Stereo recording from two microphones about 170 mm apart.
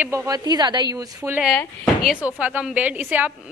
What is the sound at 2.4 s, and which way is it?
Speech, 10° right (ahead or behind).